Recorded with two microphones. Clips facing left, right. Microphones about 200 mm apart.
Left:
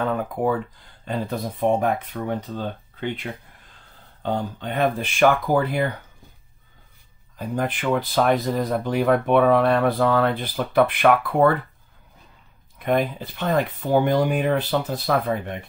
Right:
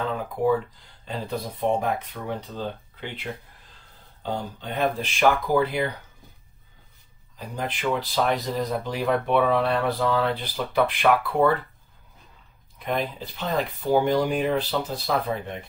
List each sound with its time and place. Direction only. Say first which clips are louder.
0.0 s speech: left 2 dB; 55° left (ahead or behind)
4.2 s speech: left 4 dB; 60° left (ahead or behind)
7.3 s speech: left 6 dB; 55° left (ahead or behind)
12.8 s speech: left 6 dB; 55° left (ahead or behind)